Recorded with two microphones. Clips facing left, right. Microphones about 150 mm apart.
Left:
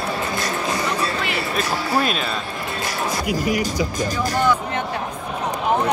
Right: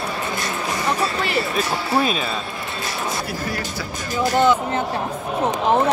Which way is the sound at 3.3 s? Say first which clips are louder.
Left 6 dB; 15° left (ahead or behind).